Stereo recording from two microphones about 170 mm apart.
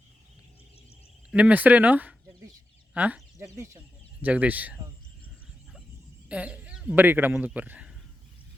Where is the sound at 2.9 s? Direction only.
10° right (ahead or behind).